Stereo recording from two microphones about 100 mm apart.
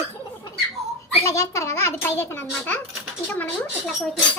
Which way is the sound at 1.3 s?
30° left (ahead or behind).